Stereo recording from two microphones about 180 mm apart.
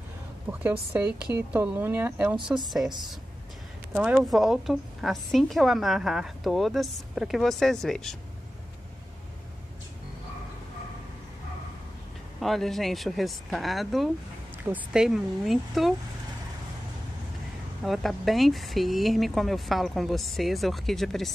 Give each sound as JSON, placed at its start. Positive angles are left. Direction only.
{"t": 0.5, "sound": "a woman's voice", "side_deg": -10}
{"t": 3.9, "sound": "a woman's voice", "side_deg": -5}
{"t": 12.4, "sound": "a woman's voice", "side_deg": 0}
{"t": 17.8, "sound": "a woman's voice", "side_deg": 0}